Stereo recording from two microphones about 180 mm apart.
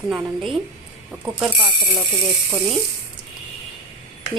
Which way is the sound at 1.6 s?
25° right (ahead or behind).